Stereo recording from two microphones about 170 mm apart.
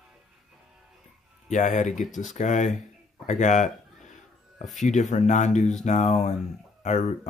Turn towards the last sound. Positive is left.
turn(degrees=45)  # may be behind; listen again after turning